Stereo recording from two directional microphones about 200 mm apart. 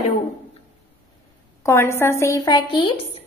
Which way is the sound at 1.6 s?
15° left (ahead or behind).